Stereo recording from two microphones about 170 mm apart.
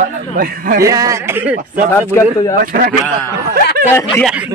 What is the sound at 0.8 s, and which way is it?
Speech, 20° right (ahead or behind).